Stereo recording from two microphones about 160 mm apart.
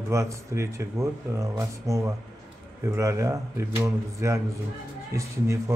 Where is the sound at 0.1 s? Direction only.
20° right (ahead or behind).